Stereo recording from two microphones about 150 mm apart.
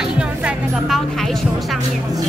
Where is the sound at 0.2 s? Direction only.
5° right (ahead or behind).